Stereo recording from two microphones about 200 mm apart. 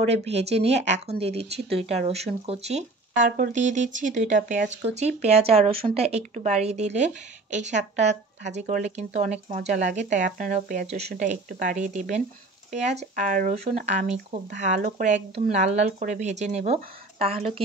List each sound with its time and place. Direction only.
0.0 s speech: 30° right (ahead or behind)